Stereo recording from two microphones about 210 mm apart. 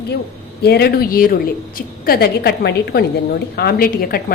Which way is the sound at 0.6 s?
50° left (ahead or behind).